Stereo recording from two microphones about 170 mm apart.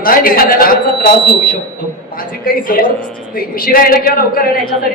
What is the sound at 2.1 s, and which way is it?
A woman's voice, 55° left (ahead or behind).